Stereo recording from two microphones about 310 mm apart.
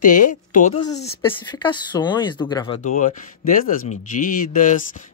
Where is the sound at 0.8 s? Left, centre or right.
Centre.